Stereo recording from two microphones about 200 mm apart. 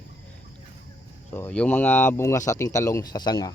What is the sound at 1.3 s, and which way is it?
A man's voice, 10° left (ahead or behind).